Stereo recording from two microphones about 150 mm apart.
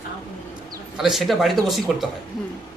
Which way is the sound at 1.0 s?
Centre (ahead or behind).